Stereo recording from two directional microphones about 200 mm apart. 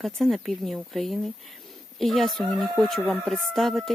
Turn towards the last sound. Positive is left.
turn(degrees=0)  # may be behind; listen again after turning